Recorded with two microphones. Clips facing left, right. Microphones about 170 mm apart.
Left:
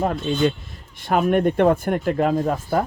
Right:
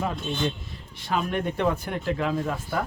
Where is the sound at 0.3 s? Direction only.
85° left.